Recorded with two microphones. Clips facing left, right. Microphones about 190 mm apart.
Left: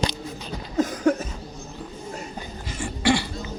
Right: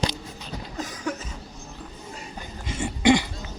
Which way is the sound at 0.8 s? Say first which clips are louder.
Left 11 dB; 50° left (ahead or behind).